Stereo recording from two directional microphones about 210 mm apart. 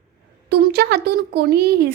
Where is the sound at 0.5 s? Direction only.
50° right (ahead or behind).